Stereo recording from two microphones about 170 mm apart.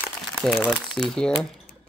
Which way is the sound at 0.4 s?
5° left (ahead or behind).